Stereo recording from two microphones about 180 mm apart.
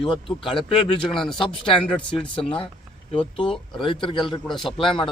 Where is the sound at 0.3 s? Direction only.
30° left (ahead or behind).